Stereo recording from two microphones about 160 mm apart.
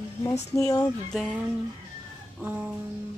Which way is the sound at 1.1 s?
Centre (ahead or behind).